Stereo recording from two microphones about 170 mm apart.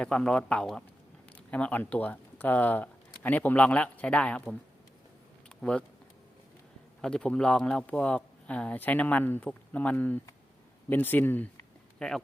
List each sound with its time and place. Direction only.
0.0 s speech: 5° left (ahead or behind)
5.5 s a sound: 5° left (ahead or behind)
7.0 s speech: 5° left (ahead or behind)